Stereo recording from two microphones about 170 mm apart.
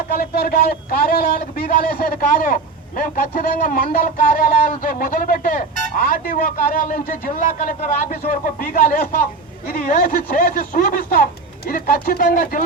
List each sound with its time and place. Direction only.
0.1 s a man's voice: 60° left (ahead or behind)